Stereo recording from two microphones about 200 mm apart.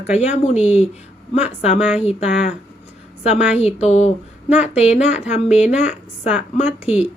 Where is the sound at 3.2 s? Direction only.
30° left (ahead or behind).